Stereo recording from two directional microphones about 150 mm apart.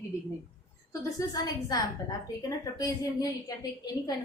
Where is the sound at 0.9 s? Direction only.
20° left (ahead or behind).